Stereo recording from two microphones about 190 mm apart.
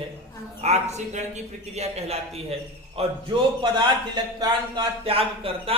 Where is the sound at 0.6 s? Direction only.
35° right (ahead or behind).